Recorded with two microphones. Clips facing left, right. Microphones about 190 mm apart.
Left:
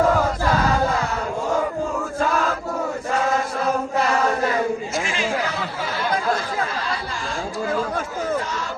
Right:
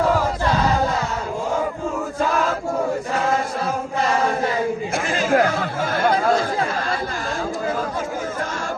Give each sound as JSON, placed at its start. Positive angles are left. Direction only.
{"t": 5.0, "sound": "chatter", "side_deg": -50}